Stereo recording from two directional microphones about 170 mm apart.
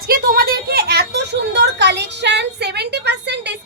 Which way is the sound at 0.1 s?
60° right (ahead or behind).